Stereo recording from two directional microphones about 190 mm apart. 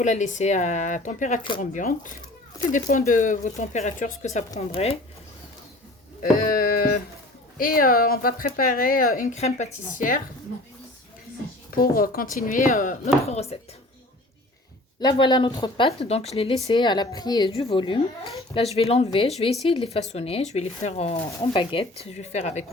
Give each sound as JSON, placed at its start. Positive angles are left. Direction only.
{"t": 0.0, "sound": "speech", "side_deg": 40}
{"t": 6.3, "sound": "a sound", "side_deg": 45}
{"t": 7.6, "sound": "speech", "side_deg": 50}
{"t": 9.1, "sound": "speech", "side_deg": 35}
{"t": 11.7, "sound": "speech", "side_deg": 50}
{"t": 15.0, "sound": "a woman's voice", "side_deg": 25}